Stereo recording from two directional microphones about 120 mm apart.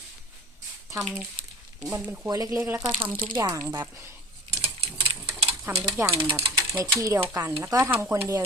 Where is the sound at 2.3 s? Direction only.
25° right (ahead or behind).